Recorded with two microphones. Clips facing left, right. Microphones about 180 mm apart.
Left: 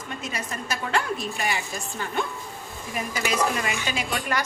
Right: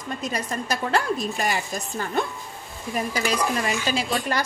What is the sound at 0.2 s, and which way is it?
Speech, 40° right (ahead or behind).